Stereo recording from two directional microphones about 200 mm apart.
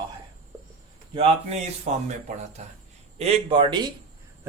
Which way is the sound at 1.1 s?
30° right (ahead or behind).